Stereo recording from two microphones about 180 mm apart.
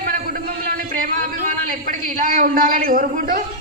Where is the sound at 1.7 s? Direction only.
50° right (ahead or behind).